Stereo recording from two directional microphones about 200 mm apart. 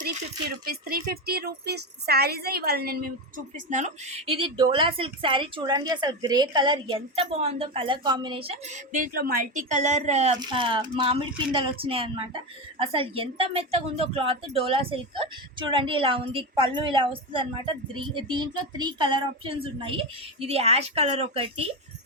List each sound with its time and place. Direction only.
0.6 s speech: 45° right (ahead or behind); by 8.8 s 30° right (ahead or behind)
8.9 s speech: 45° right (ahead or behind); by 21.7 s 30° right (ahead or behind)